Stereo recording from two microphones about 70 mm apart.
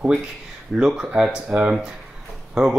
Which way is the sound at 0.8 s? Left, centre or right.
Centre.